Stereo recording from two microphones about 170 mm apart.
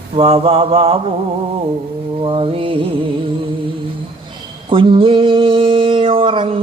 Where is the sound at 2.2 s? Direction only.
30° right (ahead or behind).